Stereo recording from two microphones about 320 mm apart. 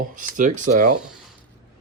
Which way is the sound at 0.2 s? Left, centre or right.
Right.